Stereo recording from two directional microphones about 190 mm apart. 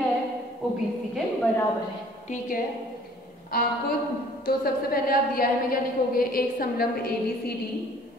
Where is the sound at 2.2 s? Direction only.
45° left (ahead or behind).